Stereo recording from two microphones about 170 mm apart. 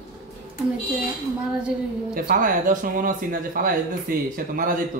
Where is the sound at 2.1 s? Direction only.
55° right (ahead or behind).